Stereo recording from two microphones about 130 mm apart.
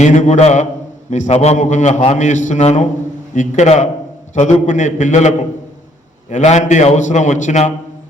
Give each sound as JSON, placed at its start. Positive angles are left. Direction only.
{"t": 0.0, "sound": "a man's voice", "side_deg": 70}
{"t": 6.3, "sound": "a man's voice", "side_deg": 65}